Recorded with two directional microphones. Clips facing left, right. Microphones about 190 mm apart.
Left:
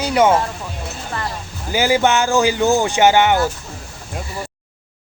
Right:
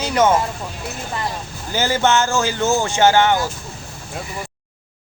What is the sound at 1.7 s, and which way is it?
Speech, 10° left (ahead or behind).